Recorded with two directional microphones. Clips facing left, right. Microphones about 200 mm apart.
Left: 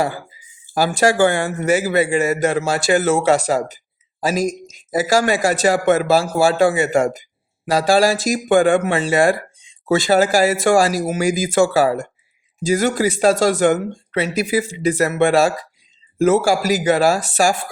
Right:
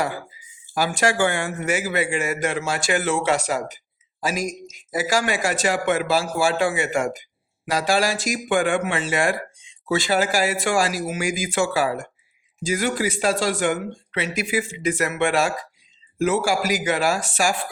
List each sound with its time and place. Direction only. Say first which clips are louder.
0.7 s a man's voice: left 5 dB; 35° left (ahead or behind)